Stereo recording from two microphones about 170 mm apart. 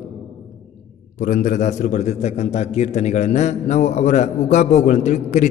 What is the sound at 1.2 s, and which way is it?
A man's voice, 45° left (ahead or behind).